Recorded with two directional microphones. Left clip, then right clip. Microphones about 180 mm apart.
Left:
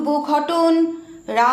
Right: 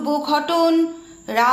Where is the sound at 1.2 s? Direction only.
25° right (ahead or behind).